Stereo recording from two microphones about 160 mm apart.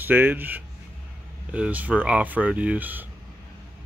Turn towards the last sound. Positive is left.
turn(degrees=-10)  # may be behind; listen again after turning